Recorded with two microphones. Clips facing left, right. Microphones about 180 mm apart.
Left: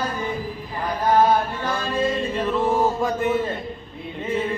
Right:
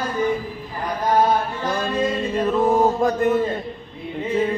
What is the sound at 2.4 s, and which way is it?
Mantra, 40° right (ahead or behind).